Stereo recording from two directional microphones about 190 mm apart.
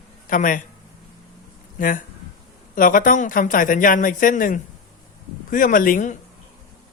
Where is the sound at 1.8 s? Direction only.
45° left (ahead or behind).